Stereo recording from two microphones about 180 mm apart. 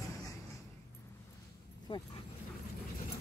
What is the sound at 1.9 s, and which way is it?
Speech, 25° left (ahead or behind).